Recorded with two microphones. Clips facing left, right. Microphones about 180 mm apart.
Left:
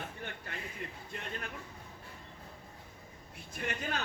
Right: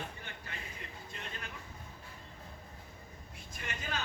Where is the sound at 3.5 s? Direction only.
60° left (ahead or behind).